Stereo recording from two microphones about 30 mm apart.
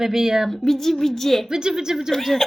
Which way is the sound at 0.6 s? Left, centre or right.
Centre.